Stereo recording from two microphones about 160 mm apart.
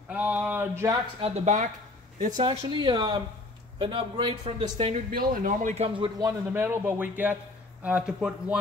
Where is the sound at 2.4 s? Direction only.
30° right (ahead or behind).